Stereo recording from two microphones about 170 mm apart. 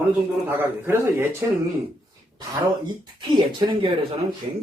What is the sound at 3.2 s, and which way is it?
Speech, 30° right (ahead or behind).